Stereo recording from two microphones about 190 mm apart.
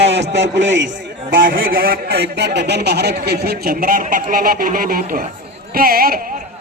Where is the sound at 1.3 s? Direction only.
45° right (ahead or behind).